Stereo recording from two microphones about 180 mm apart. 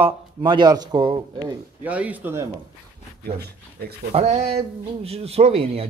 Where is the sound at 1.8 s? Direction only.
10° right (ahead or behind).